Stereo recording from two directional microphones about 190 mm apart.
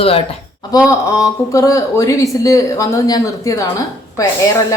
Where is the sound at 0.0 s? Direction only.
30° left (ahead or behind).